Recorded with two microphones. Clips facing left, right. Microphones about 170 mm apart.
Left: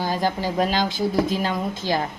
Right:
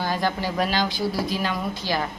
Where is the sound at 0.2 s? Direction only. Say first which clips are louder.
Left 2 dB; 15° left (ahead or behind).